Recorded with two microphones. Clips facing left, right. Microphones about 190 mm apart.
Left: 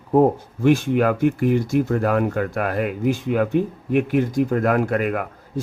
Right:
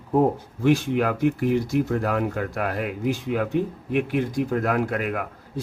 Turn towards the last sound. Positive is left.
turn(degrees=50)  # may be behind; listen again after turning